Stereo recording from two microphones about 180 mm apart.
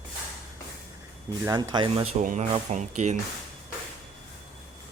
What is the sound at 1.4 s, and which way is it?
Speech, 15° right (ahead or behind).